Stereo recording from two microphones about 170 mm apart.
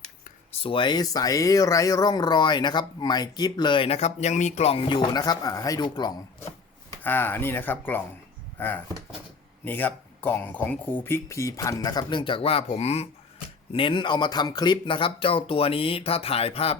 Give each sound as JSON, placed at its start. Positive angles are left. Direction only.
{"t": 0.6, "sound": "speech", "side_deg": 30}
{"t": 7.0, "sound": "speech", "side_deg": 10}